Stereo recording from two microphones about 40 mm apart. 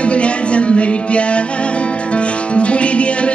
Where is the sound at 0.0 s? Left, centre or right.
Left.